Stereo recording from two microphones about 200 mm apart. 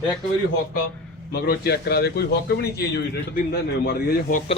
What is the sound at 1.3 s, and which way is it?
A man's voice, 50° left (ahead or behind).